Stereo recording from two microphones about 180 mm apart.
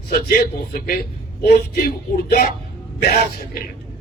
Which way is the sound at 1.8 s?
50° left (ahead or behind).